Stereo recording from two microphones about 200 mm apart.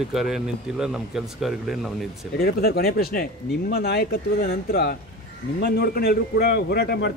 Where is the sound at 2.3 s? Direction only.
50° left (ahead or behind).